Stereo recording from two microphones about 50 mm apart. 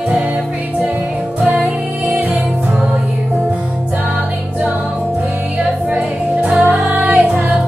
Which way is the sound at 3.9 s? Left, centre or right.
Right.